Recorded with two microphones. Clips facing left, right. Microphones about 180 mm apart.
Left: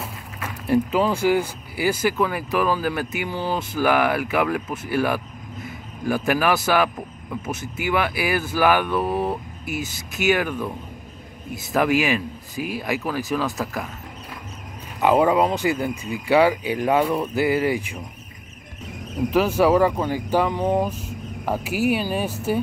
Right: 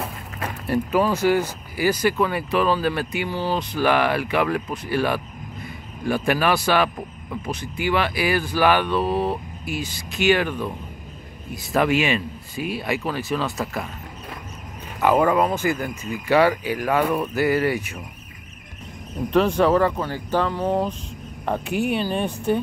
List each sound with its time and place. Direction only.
0.7 s speech: 15° left (ahead or behind)
11.7 s speech: 5° left (ahead or behind)
15.0 s speech: 15° left (ahead or behind)
19.3 s speech: 5° left (ahead or behind)
21.5 s speech: 5° left (ahead or behind)